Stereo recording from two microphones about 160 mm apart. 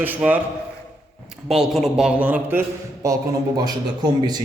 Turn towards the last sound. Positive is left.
turn(degrees=-25)  # may be behind; listen again after turning